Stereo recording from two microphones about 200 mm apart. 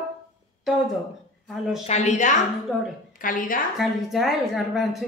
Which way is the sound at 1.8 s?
35° left (ahead or behind).